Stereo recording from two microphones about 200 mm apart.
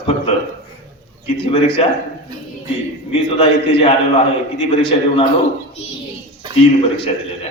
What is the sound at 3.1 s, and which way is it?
A man's voice, 30° left (ahead or behind).